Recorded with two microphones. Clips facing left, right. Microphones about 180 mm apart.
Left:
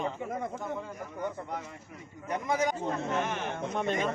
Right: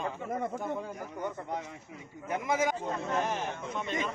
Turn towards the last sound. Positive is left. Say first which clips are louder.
# left 4 dB
turn(degrees=50)  # may be behind; listen again after turning